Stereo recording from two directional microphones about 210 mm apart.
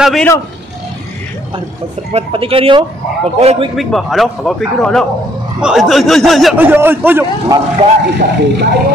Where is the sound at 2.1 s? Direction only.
25° right (ahead or behind).